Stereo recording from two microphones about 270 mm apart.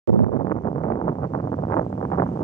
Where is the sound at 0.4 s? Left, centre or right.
Centre.